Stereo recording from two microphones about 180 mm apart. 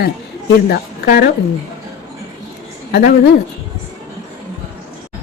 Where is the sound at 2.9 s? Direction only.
65° left (ahead or behind).